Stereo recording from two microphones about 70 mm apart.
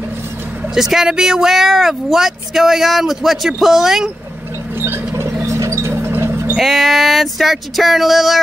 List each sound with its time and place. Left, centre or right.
0.7 s speech: centre
4.8 s a sound: right
6.6 s speech: centre